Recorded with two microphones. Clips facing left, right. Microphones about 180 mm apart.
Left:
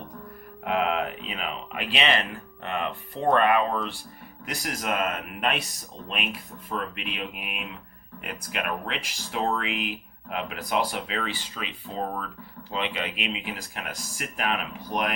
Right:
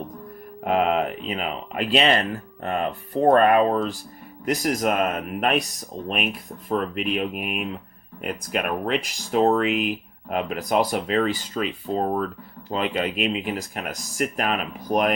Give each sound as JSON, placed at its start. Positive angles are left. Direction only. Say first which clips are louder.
{"t": 0.6, "sound": "speech", "louder": "right 5 dB", "side_deg": -45}
{"t": 6.7, "sound": "speech", "louder": "right 8 dB", "side_deg": -45}